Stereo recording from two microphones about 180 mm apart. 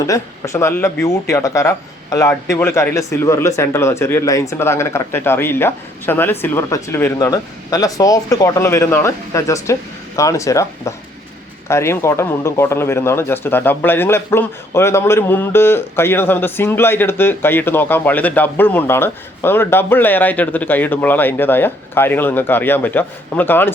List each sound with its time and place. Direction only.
0.1 s speech: 15° left (ahead or behind)